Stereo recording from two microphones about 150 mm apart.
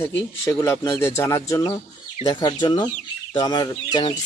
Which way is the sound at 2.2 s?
30° left (ahead or behind).